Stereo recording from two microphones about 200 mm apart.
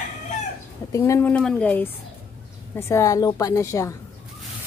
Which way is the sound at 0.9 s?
15° left (ahead or behind).